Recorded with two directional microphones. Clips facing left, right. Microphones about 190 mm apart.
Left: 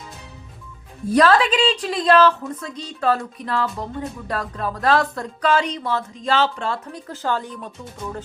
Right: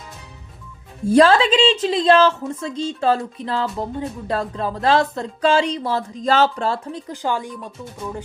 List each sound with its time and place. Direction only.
1.1 s speech: 25° right (ahead or behind)
6.9 s speech: 15° right (ahead or behind)